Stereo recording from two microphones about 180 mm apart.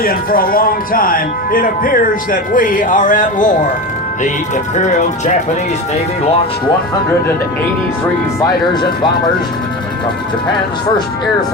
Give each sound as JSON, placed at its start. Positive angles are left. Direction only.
{"t": 0.0, "sound": "speech", "side_deg": 55}
{"t": 8.7, "sound": "speech", "side_deg": 25}